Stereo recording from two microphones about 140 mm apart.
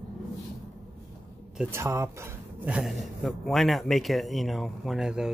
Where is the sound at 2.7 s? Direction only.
Centre (ahead or behind).